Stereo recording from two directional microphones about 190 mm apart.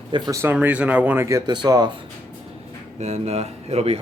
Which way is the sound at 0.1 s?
15° right (ahead or behind).